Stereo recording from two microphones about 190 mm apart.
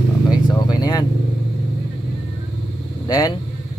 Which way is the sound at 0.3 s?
20° left (ahead or behind).